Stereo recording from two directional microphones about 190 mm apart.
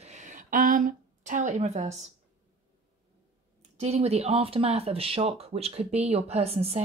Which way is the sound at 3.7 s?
35° right (ahead or behind).